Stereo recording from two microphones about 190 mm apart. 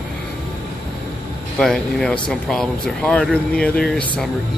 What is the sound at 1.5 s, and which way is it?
Speech, 5° left (ahead or behind).